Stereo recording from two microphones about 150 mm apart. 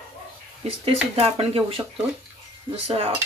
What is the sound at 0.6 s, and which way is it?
Speech, 40° right (ahead or behind).